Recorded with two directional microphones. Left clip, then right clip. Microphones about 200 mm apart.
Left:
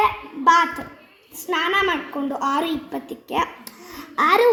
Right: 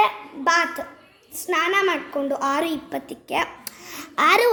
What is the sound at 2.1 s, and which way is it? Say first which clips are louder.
A woman's voice: even; 50° right (ahead or behind).